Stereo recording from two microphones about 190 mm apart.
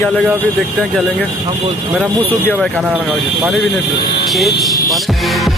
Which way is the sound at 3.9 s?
25° left (ahead or behind).